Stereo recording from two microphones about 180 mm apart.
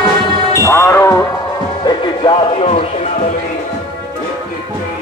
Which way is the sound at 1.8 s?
25° left (ahead or behind).